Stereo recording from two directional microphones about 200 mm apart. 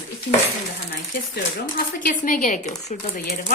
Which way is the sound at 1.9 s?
40° left (ahead or behind).